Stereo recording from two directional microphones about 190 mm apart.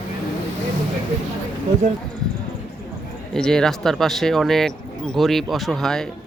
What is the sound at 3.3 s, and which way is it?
Speech, 5° left (ahead or behind).